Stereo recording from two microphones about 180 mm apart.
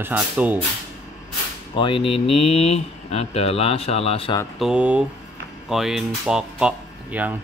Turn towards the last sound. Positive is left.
turn(degrees=-5)  # may be behind; listen again after turning